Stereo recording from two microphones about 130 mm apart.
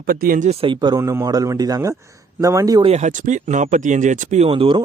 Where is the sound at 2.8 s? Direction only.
55° right (ahead or behind).